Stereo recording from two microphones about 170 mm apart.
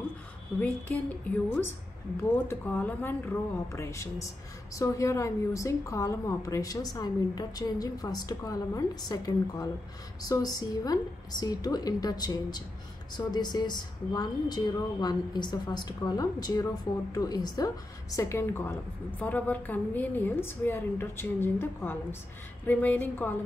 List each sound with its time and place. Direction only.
0.6 s a woman's voice: 10° left (ahead or behind)